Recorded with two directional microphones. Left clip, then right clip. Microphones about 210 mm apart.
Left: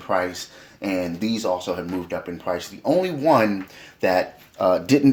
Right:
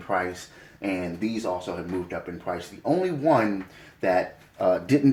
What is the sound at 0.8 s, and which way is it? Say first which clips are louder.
Speech: left 4 dB; 35° left (ahead or behind).